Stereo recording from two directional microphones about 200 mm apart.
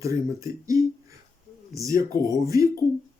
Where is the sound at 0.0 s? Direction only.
15° right (ahead or behind).